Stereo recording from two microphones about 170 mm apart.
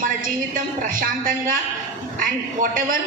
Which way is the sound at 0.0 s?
55° right (ahead or behind).